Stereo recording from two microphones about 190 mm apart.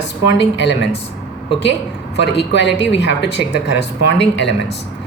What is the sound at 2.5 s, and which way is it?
A woman's voice, 65° left (ahead or behind).